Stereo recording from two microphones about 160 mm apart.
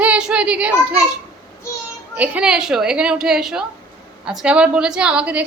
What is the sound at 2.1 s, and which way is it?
A woman's voice, 5° right (ahead or behind).